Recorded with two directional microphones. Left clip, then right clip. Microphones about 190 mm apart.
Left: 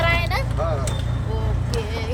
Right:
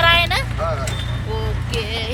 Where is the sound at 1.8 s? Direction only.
5° left (ahead or behind).